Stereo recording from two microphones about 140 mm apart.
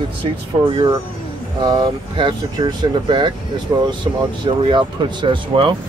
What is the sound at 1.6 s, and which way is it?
Speech, 30° right (ahead or behind).